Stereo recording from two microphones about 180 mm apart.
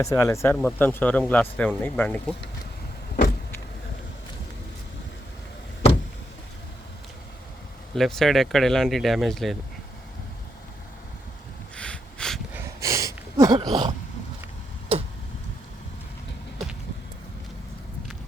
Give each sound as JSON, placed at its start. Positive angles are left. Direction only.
{"t": 0.0, "sound": "speech", "side_deg": 15}
{"t": 3.1, "sound": "vehicle", "side_deg": 65}
{"t": 7.9, "sound": "speech", "side_deg": 0}
{"t": 11.8, "sound": "a sound", "side_deg": 5}
{"t": 12.5, "sound": "a sound", "side_deg": -15}
{"t": 14.9, "sound": "tick-tock", "side_deg": -30}